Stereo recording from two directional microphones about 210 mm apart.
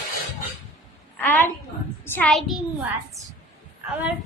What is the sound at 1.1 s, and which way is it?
Speech, 10° left (ahead or behind).